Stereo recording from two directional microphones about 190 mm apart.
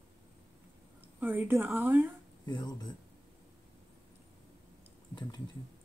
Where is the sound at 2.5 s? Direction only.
20° left (ahead or behind).